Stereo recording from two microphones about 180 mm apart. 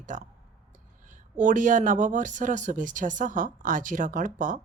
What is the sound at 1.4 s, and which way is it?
Speech, 45° right (ahead or behind).